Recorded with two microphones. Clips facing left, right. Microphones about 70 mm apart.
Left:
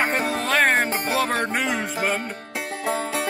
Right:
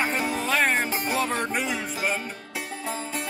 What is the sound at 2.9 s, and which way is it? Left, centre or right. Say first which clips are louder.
Music: left 8 dB; left.